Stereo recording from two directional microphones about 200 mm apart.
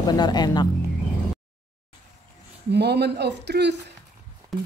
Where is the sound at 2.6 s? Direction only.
55° right (ahead or behind).